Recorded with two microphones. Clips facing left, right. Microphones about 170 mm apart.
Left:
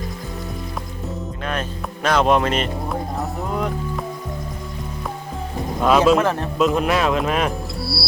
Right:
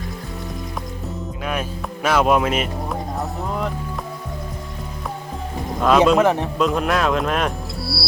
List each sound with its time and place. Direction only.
2.0 s speech: 5° right (ahead or behind)
3.2 s music: centre (ahead or behind)
5.8 s speech: centre (ahead or behind)
6.1 s a man's voice: 15° right (ahead or behind)
6.6 s speech: centre (ahead or behind)